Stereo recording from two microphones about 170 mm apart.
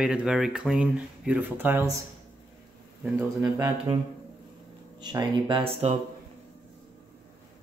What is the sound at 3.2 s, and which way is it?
Speech, 15° right (ahead or behind).